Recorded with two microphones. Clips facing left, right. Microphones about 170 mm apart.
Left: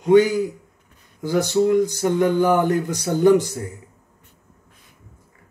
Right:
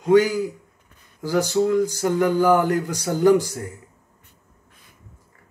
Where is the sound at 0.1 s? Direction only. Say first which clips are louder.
Left 2 dB; 20° left (ahead or behind).